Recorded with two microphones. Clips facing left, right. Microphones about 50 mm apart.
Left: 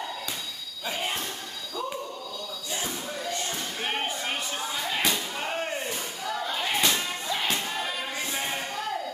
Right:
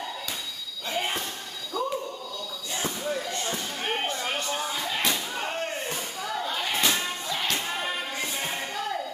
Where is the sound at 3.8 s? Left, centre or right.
Centre.